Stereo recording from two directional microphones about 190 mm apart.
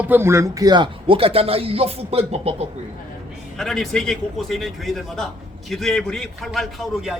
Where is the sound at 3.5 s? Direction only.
Centre (ahead or behind).